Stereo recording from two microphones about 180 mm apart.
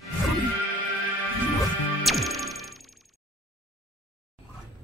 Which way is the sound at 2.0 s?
Centre (ahead or behind).